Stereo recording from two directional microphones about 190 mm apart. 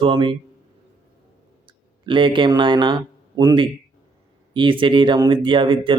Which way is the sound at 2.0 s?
25° right (ahead or behind).